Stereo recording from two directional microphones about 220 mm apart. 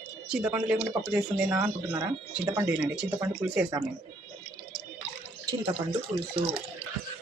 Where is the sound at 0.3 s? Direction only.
5° right (ahead or behind).